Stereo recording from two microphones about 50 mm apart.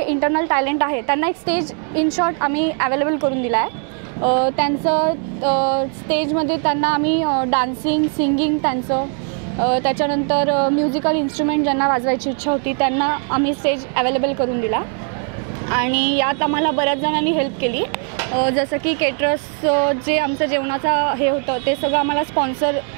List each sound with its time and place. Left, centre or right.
0.0 s a woman's voice: right